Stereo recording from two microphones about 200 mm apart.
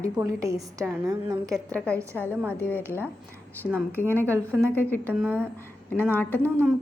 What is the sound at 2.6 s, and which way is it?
Speech, 10° left (ahead or behind).